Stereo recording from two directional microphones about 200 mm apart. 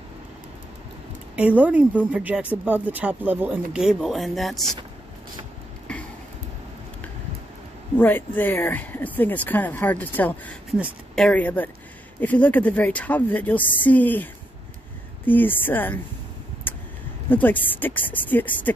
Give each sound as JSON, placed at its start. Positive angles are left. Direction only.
{"t": 1.3, "sound": "speech", "side_deg": -5}
{"t": 8.0, "sound": "speech", "side_deg": 10}
{"t": 16.7, "sound": "vehicle", "side_deg": 10}
{"t": 17.3, "sound": "speech", "side_deg": 10}